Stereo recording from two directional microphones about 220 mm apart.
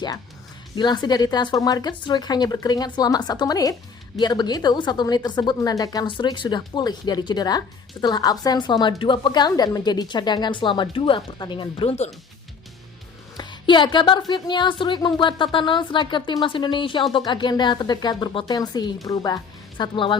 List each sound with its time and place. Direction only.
0.8 s speech: 20° left (ahead or behind)
13.3 s speech: 20° left (ahead or behind)